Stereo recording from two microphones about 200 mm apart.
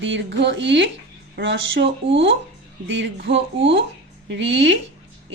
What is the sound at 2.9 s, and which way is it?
Speech, 65° right (ahead or behind).